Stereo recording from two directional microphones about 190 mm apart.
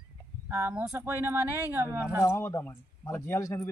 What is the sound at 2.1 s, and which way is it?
A man's voice, 15° left (ahead or behind).